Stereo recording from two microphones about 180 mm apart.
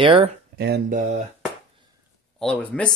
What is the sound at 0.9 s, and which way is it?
Speech, 45° right (ahead or behind).